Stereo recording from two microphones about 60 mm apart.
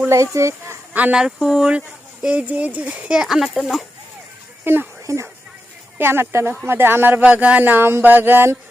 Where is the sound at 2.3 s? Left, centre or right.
Right.